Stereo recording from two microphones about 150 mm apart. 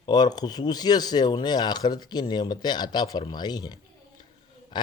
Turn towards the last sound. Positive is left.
turn(degrees=30)  # may be behind; listen again after turning